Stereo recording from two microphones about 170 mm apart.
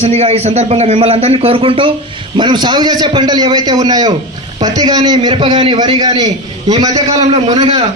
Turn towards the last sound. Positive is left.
turn(degrees=-35)  # may be behind; listen again after turning